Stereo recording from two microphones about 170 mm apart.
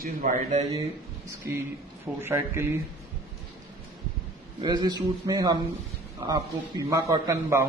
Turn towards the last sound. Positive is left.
turn(degrees=-15)  # may be behind; listen again after turning